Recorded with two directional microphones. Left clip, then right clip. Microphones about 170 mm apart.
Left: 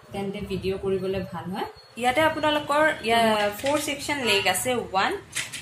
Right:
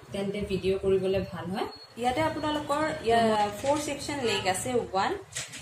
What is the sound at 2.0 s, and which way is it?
A woman's voice, 15° left (ahead or behind).